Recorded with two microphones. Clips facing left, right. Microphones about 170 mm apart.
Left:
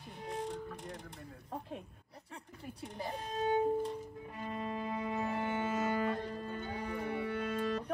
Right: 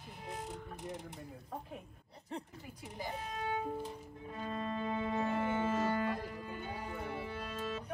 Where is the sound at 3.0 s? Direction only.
35° left (ahead or behind).